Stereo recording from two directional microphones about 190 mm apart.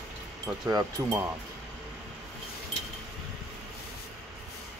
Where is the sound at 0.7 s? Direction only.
20° right (ahead or behind).